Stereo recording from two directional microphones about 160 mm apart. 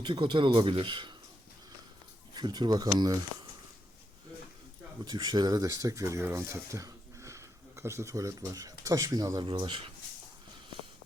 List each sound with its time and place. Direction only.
0.0 s speech: 30° right (ahead or behind)
2.3 s speech: 25° right (ahead or behind)
5.0 s speech: 25° right (ahead or behind)